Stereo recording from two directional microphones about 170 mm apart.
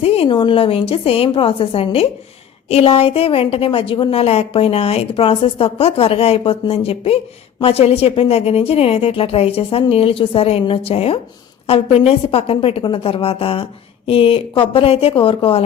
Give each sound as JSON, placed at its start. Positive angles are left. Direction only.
{"t": 0.0, "sound": "a woman's voice", "side_deg": 35}